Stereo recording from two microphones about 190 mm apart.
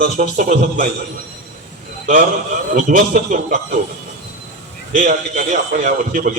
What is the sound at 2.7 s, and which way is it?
Speech, 40° right (ahead or behind).